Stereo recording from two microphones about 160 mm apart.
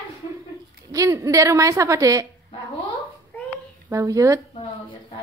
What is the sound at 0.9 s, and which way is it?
A woman's voice, 20° right (ahead or behind).